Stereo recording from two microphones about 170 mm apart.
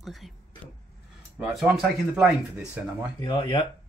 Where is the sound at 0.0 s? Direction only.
Centre (ahead or behind).